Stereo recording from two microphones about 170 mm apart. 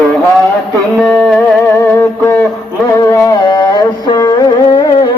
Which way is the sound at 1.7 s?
15° left (ahead or behind).